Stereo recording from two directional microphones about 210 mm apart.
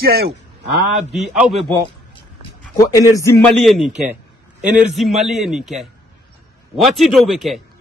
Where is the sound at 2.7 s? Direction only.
15° left (ahead or behind).